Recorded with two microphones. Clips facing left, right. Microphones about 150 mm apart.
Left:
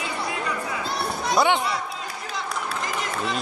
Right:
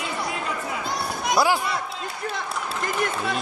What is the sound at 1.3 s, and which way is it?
Speech, 5° right (ahead or behind).